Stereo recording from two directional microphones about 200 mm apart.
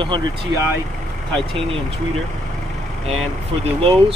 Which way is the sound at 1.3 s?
25° right (ahead or behind).